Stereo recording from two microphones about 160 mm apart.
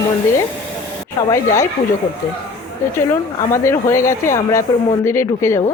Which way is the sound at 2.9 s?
15° left (ahead or behind).